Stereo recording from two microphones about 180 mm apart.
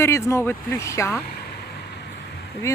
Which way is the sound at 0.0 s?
15° left (ahead or behind).